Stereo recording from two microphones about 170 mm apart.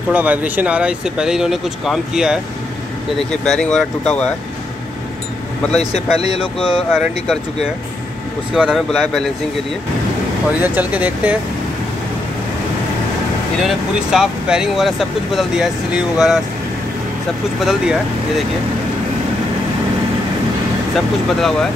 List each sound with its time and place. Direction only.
0.1 s speech: 10° right (ahead or behind)
5.9 s speech: 35° left (ahead or behind)
6.9 s speech: centre (ahead or behind)
8.5 s speech: 5° right (ahead or behind)
10.6 s speech: 10° right (ahead or behind)
13.7 s speech: 5° right (ahead or behind)
17.6 s speech: centre (ahead or behind)
20.9 s speech: centre (ahead or behind)